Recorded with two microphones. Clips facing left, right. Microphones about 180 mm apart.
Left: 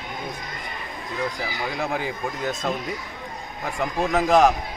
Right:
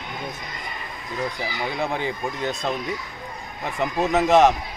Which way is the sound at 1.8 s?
5° left (ahead or behind).